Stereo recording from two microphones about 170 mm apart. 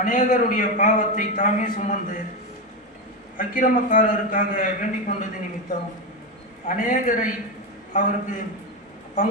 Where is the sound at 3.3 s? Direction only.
50° left (ahead or behind).